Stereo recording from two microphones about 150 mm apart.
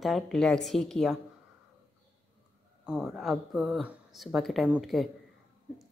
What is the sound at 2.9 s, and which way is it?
A woman's voice, centre (ahead or behind).